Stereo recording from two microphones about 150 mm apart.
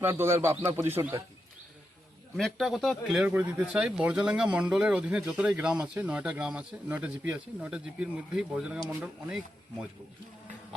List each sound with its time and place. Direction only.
0.0 s speech: 15° right (ahead or behind)
2.3 s speech: centre (ahead or behind)